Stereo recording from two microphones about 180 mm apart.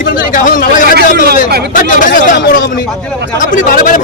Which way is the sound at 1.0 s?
60° right (ahead or behind).